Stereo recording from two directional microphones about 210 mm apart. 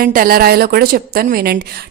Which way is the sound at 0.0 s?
45° right (ahead or behind).